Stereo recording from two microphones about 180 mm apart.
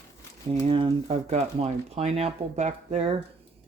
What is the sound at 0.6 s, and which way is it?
Speech, 30° right (ahead or behind).